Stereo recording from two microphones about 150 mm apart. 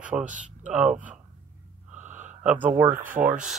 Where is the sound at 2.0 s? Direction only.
55° right (ahead or behind).